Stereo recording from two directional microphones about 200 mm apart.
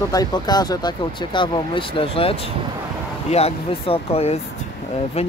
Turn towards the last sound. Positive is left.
turn(degrees=30)  # may be behind; listen again after turning